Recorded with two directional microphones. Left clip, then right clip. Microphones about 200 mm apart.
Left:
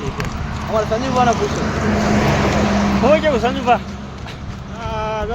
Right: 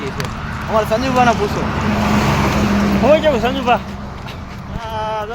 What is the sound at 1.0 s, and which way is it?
Speech, 60° right (ahead or behind).